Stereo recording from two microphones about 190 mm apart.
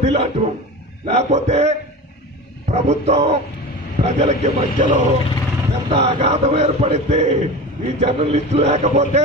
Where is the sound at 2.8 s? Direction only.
35° right (ahead or behind).